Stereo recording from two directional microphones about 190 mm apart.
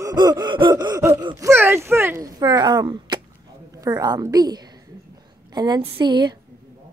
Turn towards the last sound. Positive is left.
turn(degrees=-25)  # may be behind; listen again after turning